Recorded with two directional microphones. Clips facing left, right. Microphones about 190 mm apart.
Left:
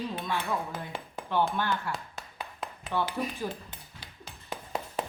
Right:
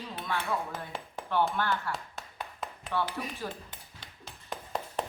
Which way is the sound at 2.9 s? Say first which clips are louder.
Left 1 dB; 15° left (ahead or behind).